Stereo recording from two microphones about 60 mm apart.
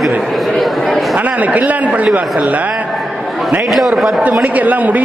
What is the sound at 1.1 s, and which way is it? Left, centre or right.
A man's voice, right.